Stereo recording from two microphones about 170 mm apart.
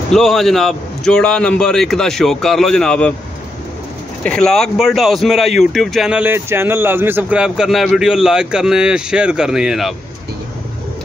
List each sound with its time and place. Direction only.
0.1 s speech: centre (ahead or behind)
4.2 s speech: 5° left (ahead or behind)